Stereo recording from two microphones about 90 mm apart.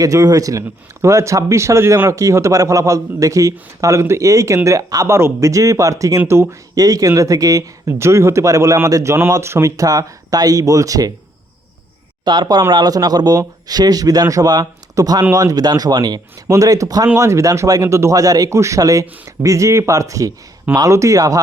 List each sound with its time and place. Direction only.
0.0 s speech: 40° right (ahead or behind)
6.7 s speech: 40° right (ahead or behind)
12.2 s speech: 55° right (ahead or behind); by 19.0 s 40° right (ahead or behind)
19.0 s speech: 20° right (ahead or behind)
19.4 s speech: 35° right (ahead or behind)